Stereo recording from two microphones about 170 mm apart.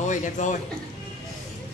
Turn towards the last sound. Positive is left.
turn(degrees=45)  # may be behind; listen again after turning